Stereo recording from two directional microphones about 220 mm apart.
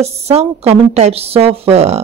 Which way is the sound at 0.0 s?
30° right (ahead or behind).